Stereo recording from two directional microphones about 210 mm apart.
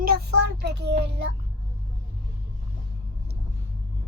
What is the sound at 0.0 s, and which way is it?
Child singing, 45° right (ahead or behind).